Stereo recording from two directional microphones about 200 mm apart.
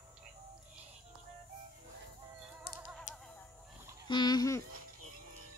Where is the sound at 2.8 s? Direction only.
Centre (ahead or behind).